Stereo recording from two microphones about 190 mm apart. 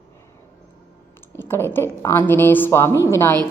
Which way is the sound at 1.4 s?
10° left (ahead or behind).